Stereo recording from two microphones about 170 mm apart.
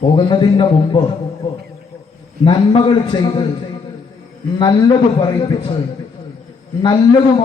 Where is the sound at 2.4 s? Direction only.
30° left (ahead or behind).